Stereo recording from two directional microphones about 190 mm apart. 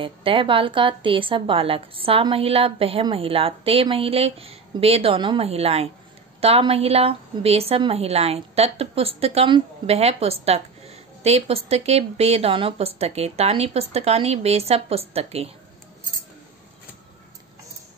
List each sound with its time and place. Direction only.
0.0 s a woman's voice: 25° right (ahead or behind)